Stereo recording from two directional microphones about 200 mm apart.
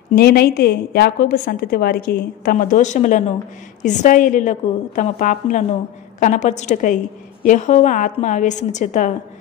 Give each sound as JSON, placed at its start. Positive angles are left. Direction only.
{"t": 0.1, "sound": "a woman's voice", "side_deg": 50}